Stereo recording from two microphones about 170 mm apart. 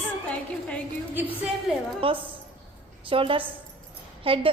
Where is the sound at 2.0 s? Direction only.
35° right (ahead or behind).